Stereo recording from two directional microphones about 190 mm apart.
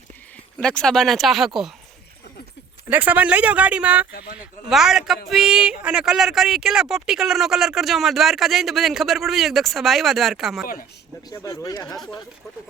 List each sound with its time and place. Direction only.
0.6 s speech: 5° left (ahead or behind)
2.9 s speech: 10° right (ahead or behind)
4.1 s speech: 55° left (ahead or behind)
4.7 s speech: centre (ahead or behind)
11.3 s speech: 15° left (ahead or behind)